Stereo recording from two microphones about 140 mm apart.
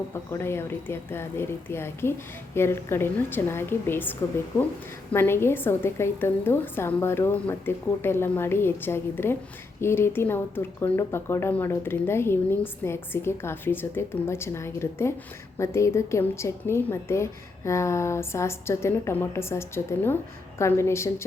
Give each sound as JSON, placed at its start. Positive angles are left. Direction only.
{"t": 0.1, "sound": "speech", "side_deg": 20}
{"t": 5.1, "sound": "a woman's voice", "side_deg": 15}